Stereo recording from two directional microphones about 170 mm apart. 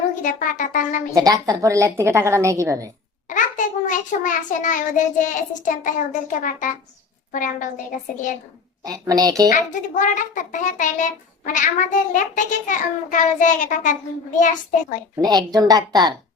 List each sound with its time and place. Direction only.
0.2 s a child's voice: 50° left (ahead or behind)
1.1 s a woman's voice: 20° right (ahead or behind)
3.2 s a child's voice: 50° left (ahead or behind)
8.8 s a woman's voice: 20° right (ahead or behind)
9.5 s a child's voice: 50° left (ahead or behind)
15.2 s a woman's voice: 25° right (ahead or behind)